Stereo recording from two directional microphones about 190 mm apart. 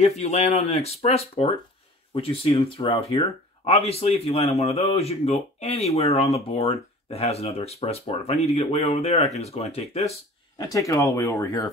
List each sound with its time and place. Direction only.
0.0 s speech: 35° left (ahead or behind)
10.6 s speech: 15° left (ahead or behind)